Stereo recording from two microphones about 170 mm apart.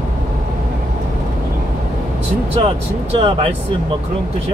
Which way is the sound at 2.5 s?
35° right (ahead or behind).